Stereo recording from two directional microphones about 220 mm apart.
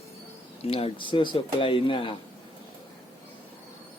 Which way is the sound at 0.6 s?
25° left (ahead or behind).